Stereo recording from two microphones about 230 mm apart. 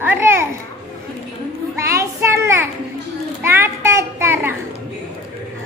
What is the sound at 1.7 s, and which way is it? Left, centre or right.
Child singing, centre.